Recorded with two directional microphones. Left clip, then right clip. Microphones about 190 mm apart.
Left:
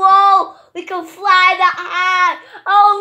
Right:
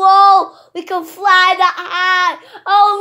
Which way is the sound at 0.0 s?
50° right (ahead or behind).